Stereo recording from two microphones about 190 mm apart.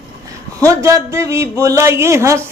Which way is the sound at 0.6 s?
15° right (ahead or behind).